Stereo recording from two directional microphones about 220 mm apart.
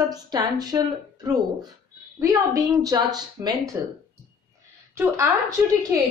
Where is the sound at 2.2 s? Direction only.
15° right (ahead or behind).